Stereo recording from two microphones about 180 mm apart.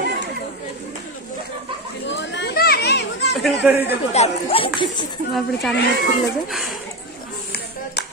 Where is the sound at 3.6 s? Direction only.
5° right (ahead or behind).